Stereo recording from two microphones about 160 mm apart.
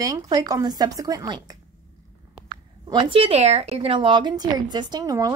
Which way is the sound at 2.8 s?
30° right (ahead or behind).